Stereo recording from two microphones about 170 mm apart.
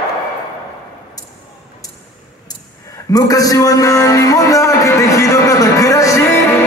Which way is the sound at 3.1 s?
20° left (ahead or behind).